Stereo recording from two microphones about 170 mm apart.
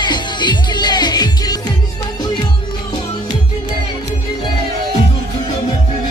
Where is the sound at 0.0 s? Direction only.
25° left (ahead or behind).